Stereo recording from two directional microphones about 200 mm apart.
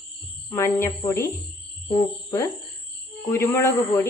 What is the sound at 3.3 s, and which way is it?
Speech, 15° left (ahead or behind).